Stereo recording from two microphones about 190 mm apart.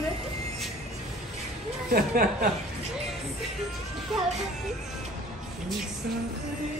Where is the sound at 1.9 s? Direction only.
50° right (ahead or behind).